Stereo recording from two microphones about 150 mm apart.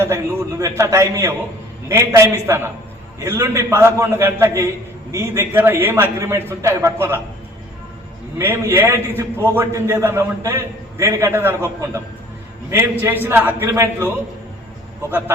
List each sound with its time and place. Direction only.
0.0 s a man's voice: 20° right (ahead or behind)
8.4 s a man's voice: 15° right (ahead or behind)